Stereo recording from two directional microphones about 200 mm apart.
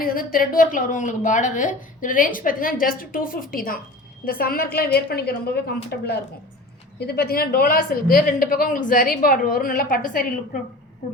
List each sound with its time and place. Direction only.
0.0 s a woman's voice: 45° left (ahead or behind)